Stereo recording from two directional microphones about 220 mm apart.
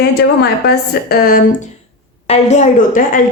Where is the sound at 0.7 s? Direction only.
45° left (ahead or behind).